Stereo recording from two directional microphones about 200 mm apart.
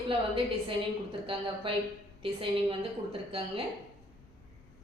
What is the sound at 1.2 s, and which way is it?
A woman's voice, 25° right (ahead or behind).